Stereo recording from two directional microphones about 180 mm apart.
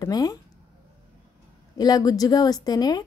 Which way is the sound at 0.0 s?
20° left (ahead or behind).